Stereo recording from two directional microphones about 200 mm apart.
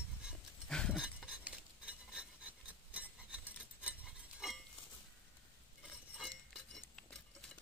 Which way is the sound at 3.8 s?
5° right (ahead or behind).